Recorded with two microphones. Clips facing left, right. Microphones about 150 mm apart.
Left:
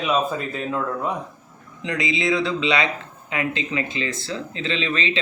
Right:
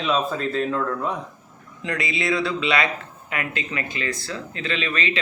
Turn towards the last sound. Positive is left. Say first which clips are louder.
# left 1 dB
turn(degrees=25)  # may be behind; listen again after turning